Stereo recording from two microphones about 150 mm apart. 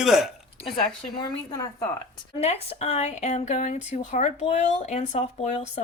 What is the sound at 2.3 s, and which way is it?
Speech, 45° left (ahead or behind).